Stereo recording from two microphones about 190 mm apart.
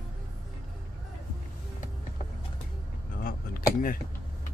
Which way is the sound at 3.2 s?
50° left (ahead or behind).